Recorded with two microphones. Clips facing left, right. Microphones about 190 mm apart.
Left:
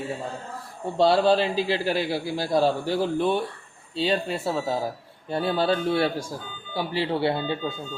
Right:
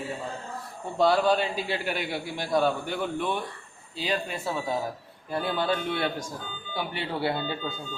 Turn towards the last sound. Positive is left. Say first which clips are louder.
# left 4 dB
turn(degrees=25)  # may be behind; listen again after turning